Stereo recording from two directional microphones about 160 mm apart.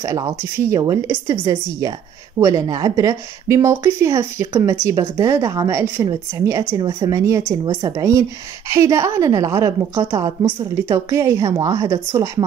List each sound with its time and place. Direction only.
0.0 s a woman's voice: 20° right (ahead or behind)